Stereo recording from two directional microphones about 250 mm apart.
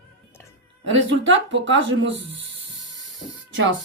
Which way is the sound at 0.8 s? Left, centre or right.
Right.